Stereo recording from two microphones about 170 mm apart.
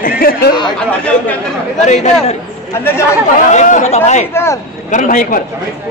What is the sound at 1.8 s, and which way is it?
Speech, 45° left (ahead or behind).